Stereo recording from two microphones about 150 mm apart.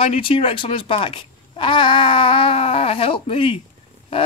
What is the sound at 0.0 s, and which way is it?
Speech, 40° left (ahead or behind).